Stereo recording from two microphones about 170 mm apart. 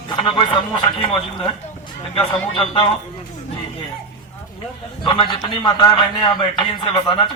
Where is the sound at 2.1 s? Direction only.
30° left (ahead or behind).